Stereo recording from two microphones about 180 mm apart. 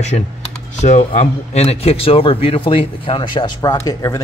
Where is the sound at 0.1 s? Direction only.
40° left (ahead or behind).